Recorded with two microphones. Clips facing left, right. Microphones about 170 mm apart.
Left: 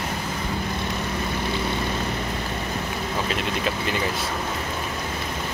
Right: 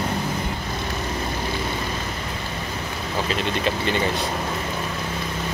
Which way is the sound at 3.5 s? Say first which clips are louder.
Right 3 dB; centre (ahead or behind).